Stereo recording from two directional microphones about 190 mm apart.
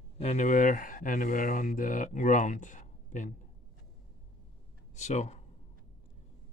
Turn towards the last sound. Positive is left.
turn(degrees=35)  # may be behind; listen again after turning